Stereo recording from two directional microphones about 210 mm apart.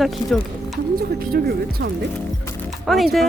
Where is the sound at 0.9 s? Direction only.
45° right (ahead or behind).